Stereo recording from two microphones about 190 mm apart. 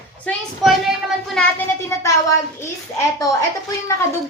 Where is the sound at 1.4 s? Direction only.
10° left (ahead or behind).